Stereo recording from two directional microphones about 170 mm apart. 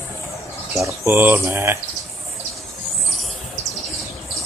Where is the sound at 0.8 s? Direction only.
15° right (ahead or behind).